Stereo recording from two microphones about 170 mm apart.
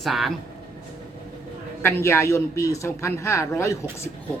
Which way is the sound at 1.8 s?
15° left (ahead or behind).